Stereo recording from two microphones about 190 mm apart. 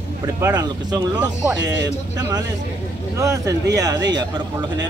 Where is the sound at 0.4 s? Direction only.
20° right (ahead or behind).